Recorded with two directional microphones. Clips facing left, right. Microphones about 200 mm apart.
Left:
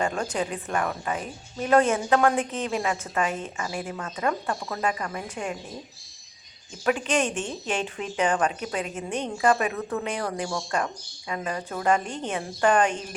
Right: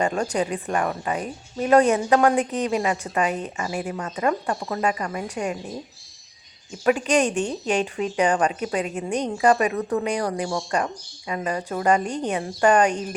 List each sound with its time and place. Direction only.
0.0 s speech: 10° right (ahead or behind)
2.4 s a woman's voice: 40° right (ahead or behind)
2.6 s speech: 15° right (ahead or behind)
6.8 s speech: 10° right (ahead or behind)
7.3 s a woman's voice: 40° right (ahead or behind)
7.9 s speech: 10° right (ahead or behind)
12.0 s a woman's voice: 40° right (ahead or behind)
12.3 s speech: 10° right (ahead or behind)